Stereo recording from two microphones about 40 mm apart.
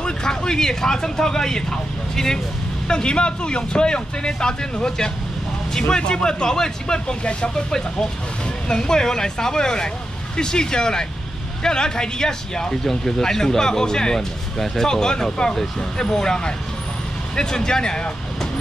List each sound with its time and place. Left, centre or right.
0.0 s speech: centre